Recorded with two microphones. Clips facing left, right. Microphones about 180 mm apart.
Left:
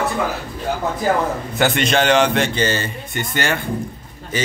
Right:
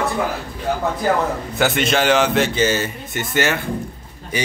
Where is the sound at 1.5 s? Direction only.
Centre (ahead or behind).